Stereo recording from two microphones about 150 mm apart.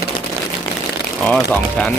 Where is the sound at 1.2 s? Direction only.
5° left (ahead or behind).